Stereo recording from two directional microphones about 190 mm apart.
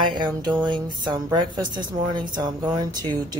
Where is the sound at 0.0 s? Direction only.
25° right (ahead or behind).